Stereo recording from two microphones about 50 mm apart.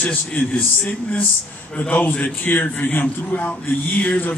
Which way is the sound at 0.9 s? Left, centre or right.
Left.